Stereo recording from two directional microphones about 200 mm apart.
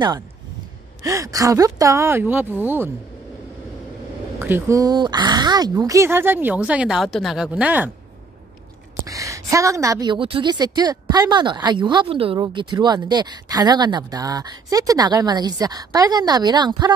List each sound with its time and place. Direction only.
1.0 s speech: 15° right (ahead or behind)
4.4 s speech: 10° right (ahead or behind)
9.0 s a woman's voice: 15° right (ahead or behind)